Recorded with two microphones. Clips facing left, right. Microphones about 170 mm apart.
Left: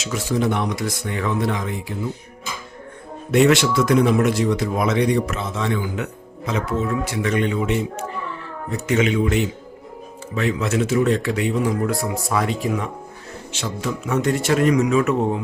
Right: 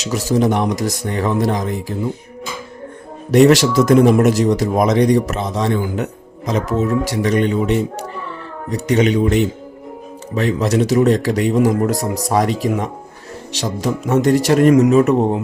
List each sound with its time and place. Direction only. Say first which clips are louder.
0.0 s speech: right 5 dB; 40° right (ahead or behind)
3.3 s speech: right 5 dB; 40° right (ahead or behind)